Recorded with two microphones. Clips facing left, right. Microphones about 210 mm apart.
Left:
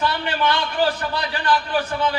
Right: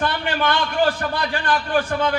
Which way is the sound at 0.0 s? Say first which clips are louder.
Even; 50° right (ahead or behind).